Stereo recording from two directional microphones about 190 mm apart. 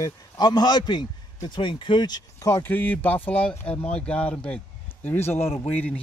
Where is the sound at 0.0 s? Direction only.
20° left (ahead or behind).